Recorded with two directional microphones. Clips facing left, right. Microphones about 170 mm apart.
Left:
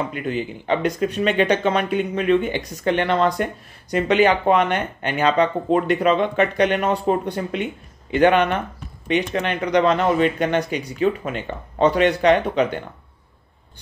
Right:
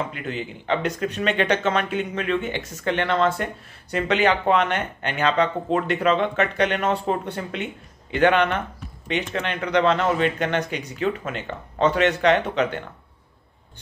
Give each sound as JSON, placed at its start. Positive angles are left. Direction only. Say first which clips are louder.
{"t": 0.3, "sound": "speech", "louder": "left 4 dB", "side_deg": 10}